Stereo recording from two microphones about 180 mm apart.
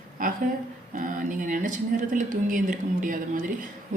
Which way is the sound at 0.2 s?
50° right (ahead or behind).